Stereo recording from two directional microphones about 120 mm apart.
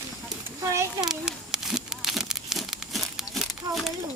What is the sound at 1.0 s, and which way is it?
Crumpling, 5° right (ahead or behind).